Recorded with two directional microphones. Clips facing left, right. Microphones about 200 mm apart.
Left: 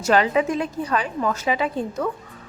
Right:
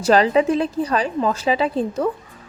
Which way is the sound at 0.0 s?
35° right (ahead or behind).